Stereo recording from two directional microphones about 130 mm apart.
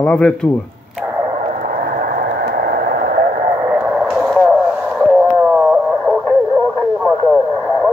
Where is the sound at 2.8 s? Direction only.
90° right.